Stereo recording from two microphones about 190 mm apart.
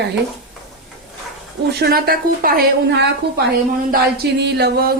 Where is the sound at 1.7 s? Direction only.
55° right (ahead or behind).